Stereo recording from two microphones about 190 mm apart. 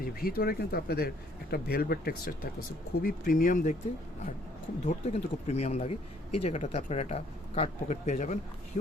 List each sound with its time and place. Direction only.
0.0 s speech: 50° left (ahead or behind)
4.9 s speech: 35° left (ahead or behind)